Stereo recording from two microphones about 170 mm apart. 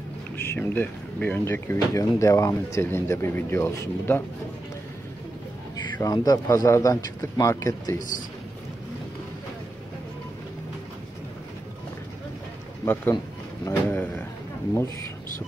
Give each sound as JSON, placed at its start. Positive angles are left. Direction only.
{"t": 0.4, "sound": "speech", "side_deg": 10}
{"t": 5.9, "sound": "a man's voice", "side_deg": 20}
{"t": 12.8, "sound": "speech", "side_deg": 10}